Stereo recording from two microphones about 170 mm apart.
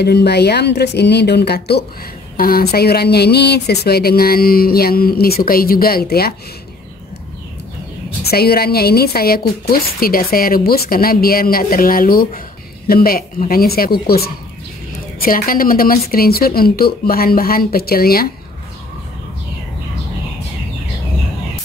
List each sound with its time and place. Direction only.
0.0 s speech: 75° left (ahead or behind)
2.3 s speech: 60° left (ahead or behind)
8.2 s speech: 65° left (ahead or behind)